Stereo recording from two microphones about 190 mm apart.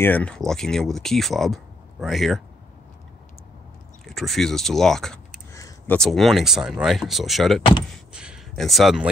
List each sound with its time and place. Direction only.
0.0 s speech: 10° left (ahead or behind)
4.0 s speech: centre (ahead or behind)
5.5 s a sound: 15° left (ahead or behind)
5.9 s speech: centre (ahead or behind)